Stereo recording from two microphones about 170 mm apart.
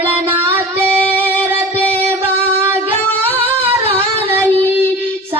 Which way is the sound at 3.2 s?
35° right (ahead or behind).